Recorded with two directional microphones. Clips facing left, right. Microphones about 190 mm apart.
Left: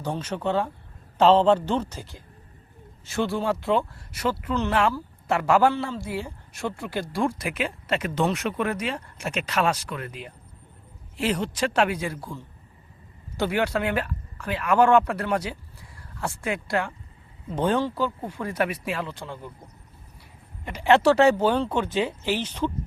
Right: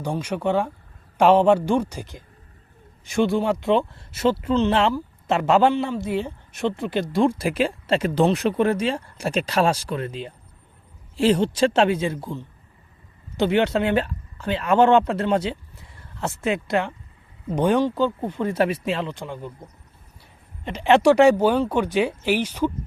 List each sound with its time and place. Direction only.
0.0 s speech: 10° right (ahead or behind)
20.7 s speech: 20° right (ahead or behind)